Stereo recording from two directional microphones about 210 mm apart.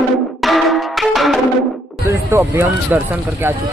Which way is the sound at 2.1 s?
15° right (ahead or behind).